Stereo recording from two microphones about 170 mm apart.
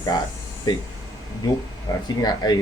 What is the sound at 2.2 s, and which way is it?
Speech, 25° left (ahead or behind).